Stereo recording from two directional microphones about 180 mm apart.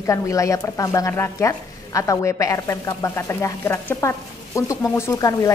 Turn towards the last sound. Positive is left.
turn(degrees=20)  # may be behind; listen again after turning